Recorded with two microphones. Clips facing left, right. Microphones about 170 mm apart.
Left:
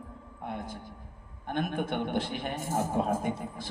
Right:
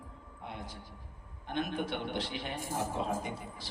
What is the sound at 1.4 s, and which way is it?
A man's voice, 50° left (ahead or behind).